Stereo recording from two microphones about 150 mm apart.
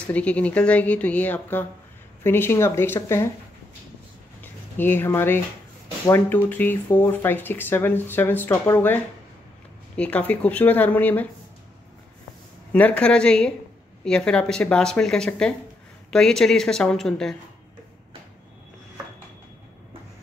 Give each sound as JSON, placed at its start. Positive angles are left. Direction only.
{"t": 0.0, "sound": "speech", "side_deg": 10}
{"t": 4.4, "sound": "speech", "side_deg": 15}
{"t": 12.7, "sound": "speech", "side_deg": 10}